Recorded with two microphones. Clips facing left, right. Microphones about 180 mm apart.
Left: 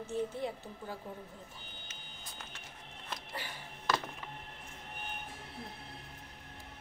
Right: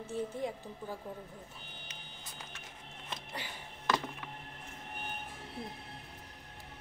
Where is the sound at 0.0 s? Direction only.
10° right (ahead or behind).